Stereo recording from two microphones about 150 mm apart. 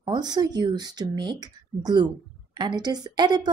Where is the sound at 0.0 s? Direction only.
30° right (ahead or behind).